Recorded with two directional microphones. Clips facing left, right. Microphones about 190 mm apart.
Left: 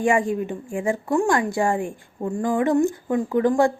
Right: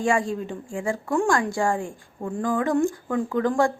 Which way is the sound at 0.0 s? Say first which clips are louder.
Left 3 dB; 20° left (ahead or behind).